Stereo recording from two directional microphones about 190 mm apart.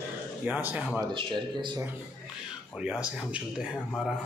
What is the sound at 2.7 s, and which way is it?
A man's voice, 5° right (ahead or behind).